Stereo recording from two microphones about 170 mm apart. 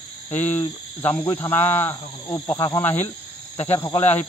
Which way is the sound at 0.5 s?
10° left (ahead or behind).